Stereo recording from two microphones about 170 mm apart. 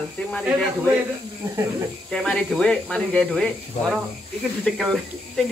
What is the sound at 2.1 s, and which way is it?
Speech, 5° left (ahead or behind).